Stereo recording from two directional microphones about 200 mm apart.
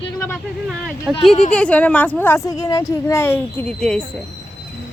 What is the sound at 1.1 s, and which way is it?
Speech, 5° right (ahead or behind).